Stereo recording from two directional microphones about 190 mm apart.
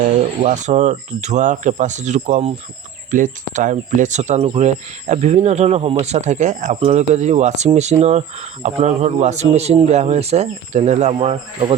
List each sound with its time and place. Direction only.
0.4 s speech: 40° right (ahead or behind)